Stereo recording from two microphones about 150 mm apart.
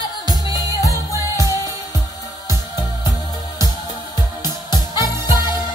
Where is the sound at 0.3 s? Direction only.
25° left (ahead or behind).